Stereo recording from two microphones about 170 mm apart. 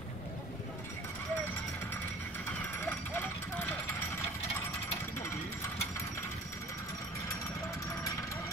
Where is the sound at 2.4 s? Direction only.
10° left (ahead or behind).